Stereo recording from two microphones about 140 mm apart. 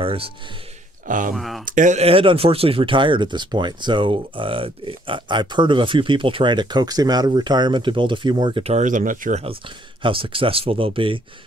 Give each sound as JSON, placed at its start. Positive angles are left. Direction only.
{"t": 0.0, "sound": "a sound", "side_deg": -40}
{"t": 1.0, "sound": "speech", "side_deg": -70}
{"t": 1.3, "sound": "speech", "side_deg": 0}
{"t": 1.7, "sound": "speech", "side_deg": -65}
{"t": 8.7, "sound": "speech", "side_deg": -70}
{"t": 10.0, "sound": "speech", "side_deg": -40}